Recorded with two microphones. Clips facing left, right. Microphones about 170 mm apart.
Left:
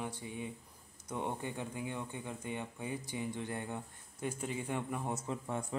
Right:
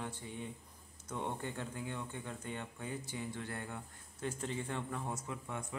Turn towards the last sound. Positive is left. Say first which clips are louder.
# left 5 dB
turn(degrees=35)  # may be behind; listen again after turning